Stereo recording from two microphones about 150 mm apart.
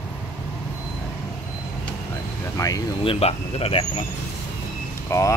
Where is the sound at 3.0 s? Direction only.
40° left (ahead or behind).